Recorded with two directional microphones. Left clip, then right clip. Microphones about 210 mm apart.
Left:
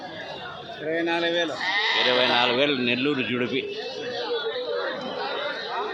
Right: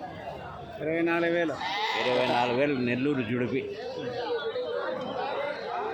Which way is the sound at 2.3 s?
Centre (ahead or behind).